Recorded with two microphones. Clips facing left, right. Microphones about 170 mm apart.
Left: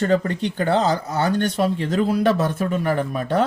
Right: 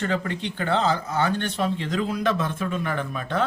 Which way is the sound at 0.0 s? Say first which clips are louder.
Left 7 dB; 40° left (ahead or behind).